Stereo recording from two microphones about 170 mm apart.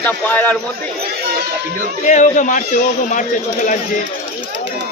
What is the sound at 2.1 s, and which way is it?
Speech, 45° left (ahead or behind).